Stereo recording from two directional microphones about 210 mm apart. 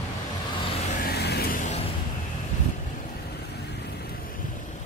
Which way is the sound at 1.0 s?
50° left (ahead or behind).